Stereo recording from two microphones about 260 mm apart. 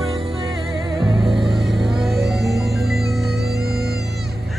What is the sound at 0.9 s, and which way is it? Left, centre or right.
Music, centre.